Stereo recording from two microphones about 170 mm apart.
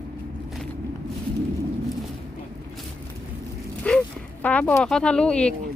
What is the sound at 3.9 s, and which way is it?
Speech, 5° left (ahead or behind).